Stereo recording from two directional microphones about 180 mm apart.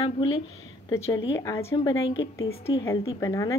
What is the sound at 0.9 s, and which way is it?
Speech, 15° left (ahead or behind).